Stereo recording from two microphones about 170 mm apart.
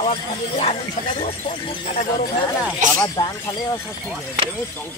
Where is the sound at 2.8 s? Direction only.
50° right (ahead or behind).